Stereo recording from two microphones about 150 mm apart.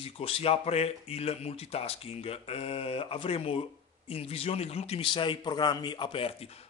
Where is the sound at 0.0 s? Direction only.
40° left (ahead or behind).